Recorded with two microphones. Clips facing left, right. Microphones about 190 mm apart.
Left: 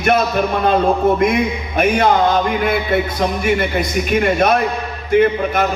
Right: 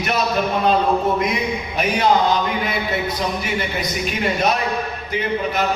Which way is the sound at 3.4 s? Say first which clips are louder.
Left 7 dB; 50° left (ahead or behind).